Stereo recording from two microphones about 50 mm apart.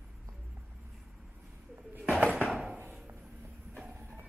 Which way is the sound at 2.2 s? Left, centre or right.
Right.